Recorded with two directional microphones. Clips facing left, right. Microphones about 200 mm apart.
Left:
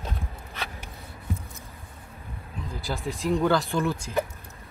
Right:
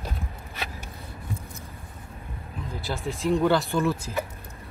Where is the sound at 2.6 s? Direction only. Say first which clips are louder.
Even; centre (ahead or behind).